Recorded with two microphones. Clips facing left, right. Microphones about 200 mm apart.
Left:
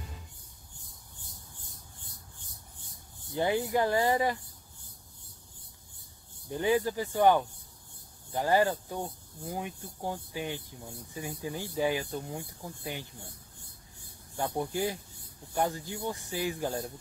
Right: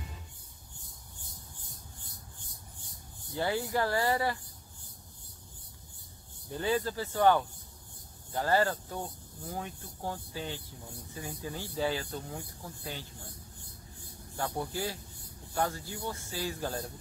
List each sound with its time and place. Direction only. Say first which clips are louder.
3.3 s speech: left 3 dB; 20° left (ahead or behind)
6.5 s speech: left 3 dB; 15° left (ahead or behind)
14.3 s speech: left 3 dB; 20° left (ahead or behind)